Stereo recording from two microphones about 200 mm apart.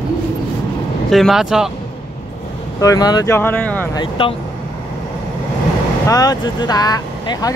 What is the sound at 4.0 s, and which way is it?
Speech, 25° left (ahead or behind).